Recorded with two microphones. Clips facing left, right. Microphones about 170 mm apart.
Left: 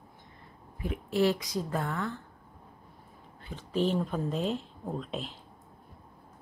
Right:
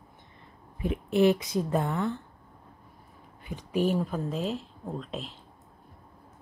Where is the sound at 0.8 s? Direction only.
20° right (ahead or behind).